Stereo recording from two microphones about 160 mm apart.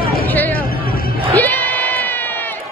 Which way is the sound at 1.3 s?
10° left (ahead or behind).